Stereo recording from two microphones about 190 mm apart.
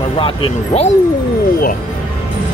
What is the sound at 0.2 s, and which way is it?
Speech, 30° left (ahead or behind).